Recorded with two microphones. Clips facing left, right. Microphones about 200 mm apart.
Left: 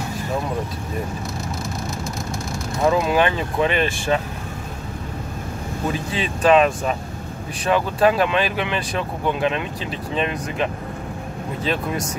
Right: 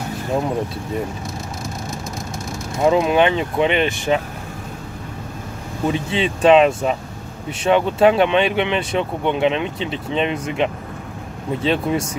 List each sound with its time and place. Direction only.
2.8 s speech: 20° right (ahead or behind)
5.9 s speech: 25° right (ahead or behind)